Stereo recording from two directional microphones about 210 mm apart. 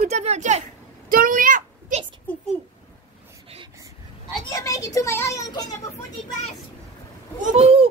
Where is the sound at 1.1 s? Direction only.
40° right (ahead or behind).